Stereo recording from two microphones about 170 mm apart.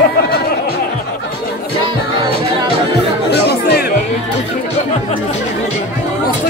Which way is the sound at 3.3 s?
70° left (ahead or behind).